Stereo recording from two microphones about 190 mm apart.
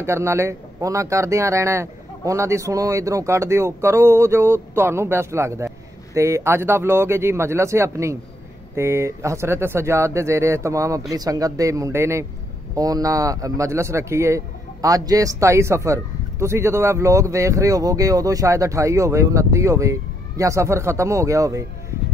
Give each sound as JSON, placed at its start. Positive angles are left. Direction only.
{"t": 0.0, "sound": "a man's voice", "side_deg": -15}